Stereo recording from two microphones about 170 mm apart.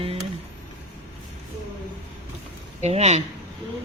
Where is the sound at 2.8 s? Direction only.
40° right (ahead or behind).